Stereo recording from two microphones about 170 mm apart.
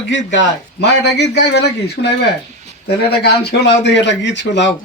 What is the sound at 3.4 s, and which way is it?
Speech, 90° left.